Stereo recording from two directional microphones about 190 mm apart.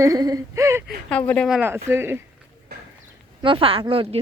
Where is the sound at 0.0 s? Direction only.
20° right (ahead or behind).